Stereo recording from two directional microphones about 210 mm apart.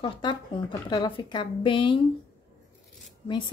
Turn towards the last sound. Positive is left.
turn(degrees=20)  # may be behind; listen again after turning